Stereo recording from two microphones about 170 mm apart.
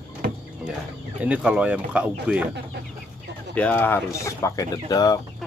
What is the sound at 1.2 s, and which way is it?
Speech, 5° right (ahead or behind).